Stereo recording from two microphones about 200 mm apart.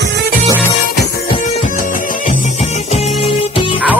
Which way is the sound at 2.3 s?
30° left (ahead or behind).